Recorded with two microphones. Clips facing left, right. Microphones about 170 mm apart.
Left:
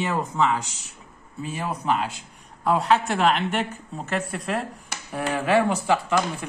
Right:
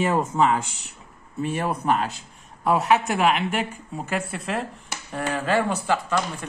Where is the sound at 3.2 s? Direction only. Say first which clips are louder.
Even; 5° right (ahead or behind).